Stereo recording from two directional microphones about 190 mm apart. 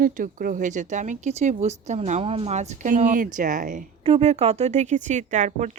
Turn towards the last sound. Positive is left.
turn(degrees=-40)  # may be behind; listen again after turning